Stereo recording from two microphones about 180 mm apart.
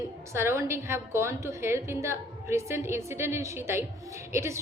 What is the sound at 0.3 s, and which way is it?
A woman's voice, 15° right (ahead or behind).